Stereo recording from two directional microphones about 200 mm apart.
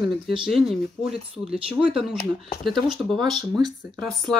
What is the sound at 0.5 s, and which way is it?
Speech, centre (ahead or behind).